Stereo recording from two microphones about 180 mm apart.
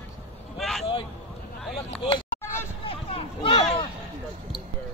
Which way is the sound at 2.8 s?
30° left (ahead or behind).